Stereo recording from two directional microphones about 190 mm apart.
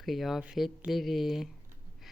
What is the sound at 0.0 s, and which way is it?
Speech, centre (ahead or behind).